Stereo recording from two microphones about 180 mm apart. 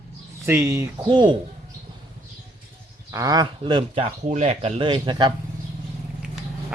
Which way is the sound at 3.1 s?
20° right (ahead or behind).